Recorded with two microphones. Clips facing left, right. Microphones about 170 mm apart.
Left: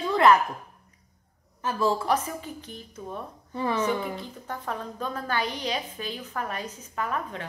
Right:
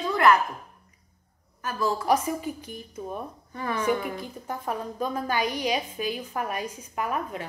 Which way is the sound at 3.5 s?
25° left (ahead or behind).